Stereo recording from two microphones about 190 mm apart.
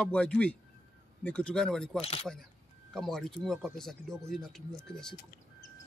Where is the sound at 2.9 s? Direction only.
Centre (ahead or behind).